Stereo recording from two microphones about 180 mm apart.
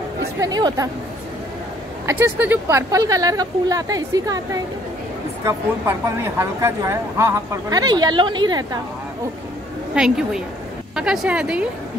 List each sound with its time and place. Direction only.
0.4 s a woman's voice: 20° right (ahead or behind)
2.0 s a woman's voice: 15° right (ahead or behind)
9.9 s a woman's voice: 5° right (ahead or behind)